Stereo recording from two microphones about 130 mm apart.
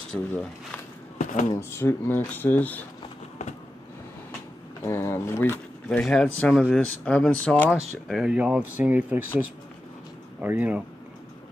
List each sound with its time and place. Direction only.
0.1 s speech: 5° left (ahead or behind)
1.1 s a sound: 75° left (ahead or behind)
1.5 s speech: 20° left (ahead or behind)
4.8 s speech: 20° left (ahead or behind)
5.9 s speech: 5° left (ahead or behind)
8.1 s speech: 5° right (ahead or behind)
10.4 s speech: 15° right (ahead or behind)